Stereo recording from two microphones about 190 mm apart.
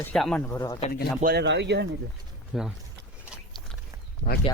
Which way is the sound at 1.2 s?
55° right (ahead or behind).